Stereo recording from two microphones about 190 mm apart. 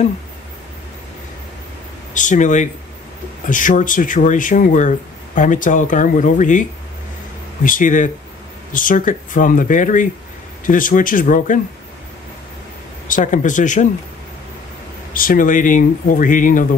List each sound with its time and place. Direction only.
2.1 s speech: 40° left (ahead or behind)
7.6 s speech: 45° left (ahead or behind)
13.1 s speech: 40° left (ahead or behind)
15.1 s speech: 45° left (ahead or behind)